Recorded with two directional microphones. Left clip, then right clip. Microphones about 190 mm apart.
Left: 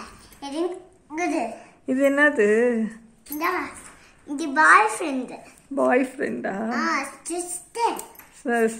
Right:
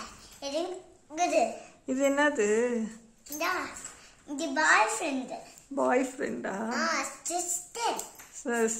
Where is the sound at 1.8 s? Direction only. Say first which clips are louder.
Left 7 dB; 5° left (ahead or behind).